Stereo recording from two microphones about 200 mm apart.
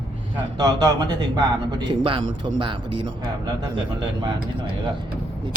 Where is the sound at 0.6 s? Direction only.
20° right (ahead or behind).